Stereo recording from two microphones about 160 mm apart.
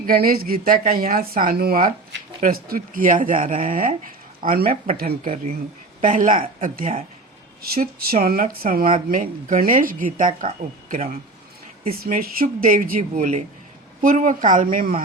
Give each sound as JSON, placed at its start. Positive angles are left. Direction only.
{"t": 0.0, "sound": "speech", "side_deg": -65}
{"t": 7.6, "sound": "speech", "side_deg": -70}
{"t": 10.8, "sound": "speech", "side_deg": -40}
{"t": 11.9, "sound": "speech", "side_deg": -65}